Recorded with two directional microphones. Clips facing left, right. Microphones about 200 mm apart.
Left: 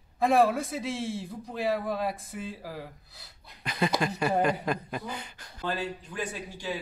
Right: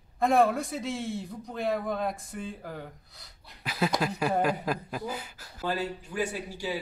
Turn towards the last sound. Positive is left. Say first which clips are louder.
# right 2 dB
turn(degrees=-10)  # may be behind; listen again after turning